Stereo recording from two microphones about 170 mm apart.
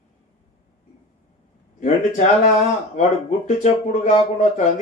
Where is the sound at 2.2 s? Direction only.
45° left (ahead or behind).